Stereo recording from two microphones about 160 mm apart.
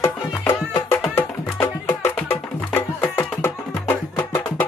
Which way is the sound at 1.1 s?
15° left (ahead or behind).